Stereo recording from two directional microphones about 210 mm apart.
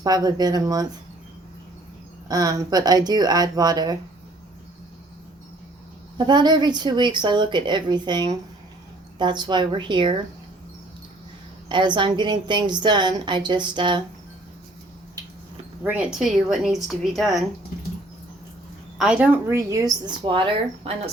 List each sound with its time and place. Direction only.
0.0 s a woman's voice: 20° right (ahead or behind)
2.2 s a woman's voice: 15° right (ahead or behind)
6.1 s a woman's voice: 20° right (ahead or behind)
11.7 s a woman's voice: 20° right (ahead or behind)
15.8 s a woman's voice: 5° right (ahead or behind)
18.9 s a woman's voice: 5° right (ahead or behind); by 20.9 s 25° right (ahead or behind)